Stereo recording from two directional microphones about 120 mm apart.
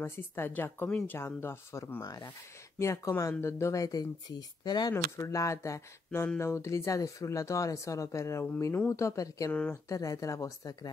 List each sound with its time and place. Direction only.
0.0 s speech: 20° left (ahead or behind); by 4.9 s 35° left (ahead or behind)
4.9 s speech: 20° left (ahead or behind)
9.5 s speech: 10° left (ahead or behind)
9.8 s speech: 25° left (ahead or behind)